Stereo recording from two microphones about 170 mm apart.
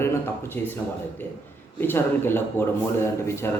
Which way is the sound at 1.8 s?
15° left (ahead or behind).